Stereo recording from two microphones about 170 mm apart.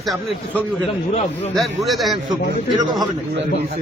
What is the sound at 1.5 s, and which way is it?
Speech, centre (ahead or behind).